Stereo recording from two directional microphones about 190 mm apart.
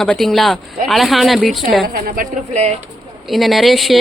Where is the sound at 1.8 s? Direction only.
50° right (ahead or behind).